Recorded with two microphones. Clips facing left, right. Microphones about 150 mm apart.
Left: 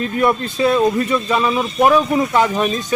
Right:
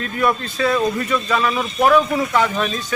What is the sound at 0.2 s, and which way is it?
A man's voice, 20° left (ahead or behind).